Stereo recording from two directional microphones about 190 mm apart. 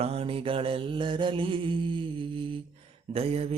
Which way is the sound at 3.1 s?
30° right (ahead or behind).